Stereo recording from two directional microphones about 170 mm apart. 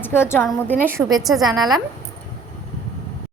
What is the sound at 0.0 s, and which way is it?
Speech, 15° left (ahead or behind).